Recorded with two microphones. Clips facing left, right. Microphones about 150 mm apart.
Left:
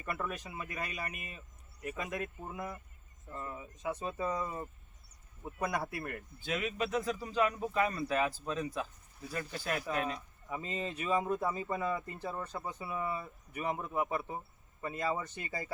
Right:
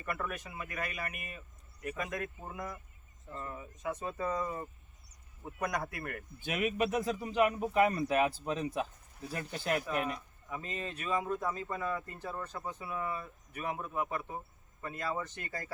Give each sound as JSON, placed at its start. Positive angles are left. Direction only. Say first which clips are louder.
{"t": 0.0, "sound": "speech", "louder": "even", "side_deg": 20}
{"t": 3.3, "sound": "speech", "louder": "even", "side_deg": 15}
{"t": 6.4, "sound": "speech", "louder": "right 3 dB", "side_deg": -15}
{"t": 10.7, "sound": "speech", "louder": "left 2 dB", "side_deg": 10}